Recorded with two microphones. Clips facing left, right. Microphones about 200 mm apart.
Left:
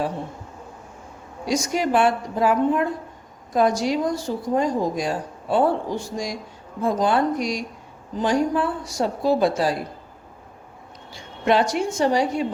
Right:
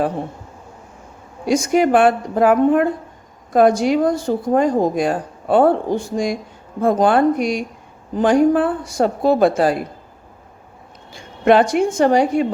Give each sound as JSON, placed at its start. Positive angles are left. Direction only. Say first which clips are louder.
{"t": 1.5, "sound": "speech", "louder": "right 7 dB", "side_deg": -55}
{"t": 11.1, "sound": "a woman's voice", "louder": "right 7 dB", "side_deg": -55}